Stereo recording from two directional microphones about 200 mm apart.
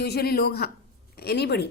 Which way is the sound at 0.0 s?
55° left (ahead or behind).